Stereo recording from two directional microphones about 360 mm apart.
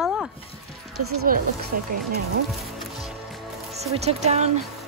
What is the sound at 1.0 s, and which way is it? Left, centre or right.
Speech, right.